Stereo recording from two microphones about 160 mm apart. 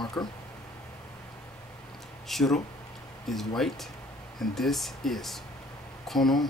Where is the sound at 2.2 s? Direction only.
Centre (ahead or behind).